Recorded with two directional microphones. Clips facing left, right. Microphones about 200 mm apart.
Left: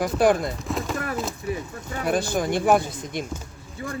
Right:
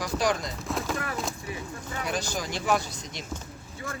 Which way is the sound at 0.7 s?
Centre (ahead or behind).